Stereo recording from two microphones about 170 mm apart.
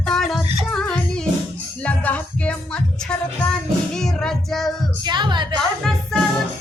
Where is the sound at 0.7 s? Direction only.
5° left (ahead or behind).